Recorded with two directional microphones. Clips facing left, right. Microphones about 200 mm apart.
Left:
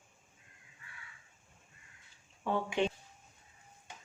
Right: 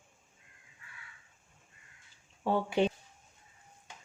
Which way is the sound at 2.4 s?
35° right (ahead or behind).